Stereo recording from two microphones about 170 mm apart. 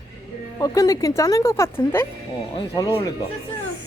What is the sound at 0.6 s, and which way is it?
Speech, 20° left (ahead or behind).